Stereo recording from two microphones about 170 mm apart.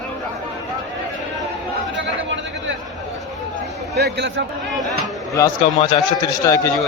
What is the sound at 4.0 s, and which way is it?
Speech, 80° right.